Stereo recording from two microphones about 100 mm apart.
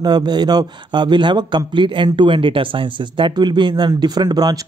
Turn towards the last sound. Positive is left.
turn(degrees=-40)  # may be behind; listen again after turning